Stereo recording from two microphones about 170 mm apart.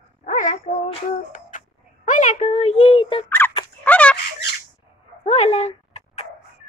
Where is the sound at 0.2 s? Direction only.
50° left (ahead or behind).